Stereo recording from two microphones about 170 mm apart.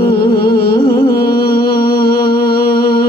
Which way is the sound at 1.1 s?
65° left (ahead or behind).